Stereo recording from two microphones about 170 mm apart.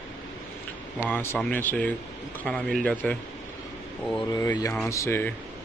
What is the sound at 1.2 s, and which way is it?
Speech, 15° left (ahead or behind).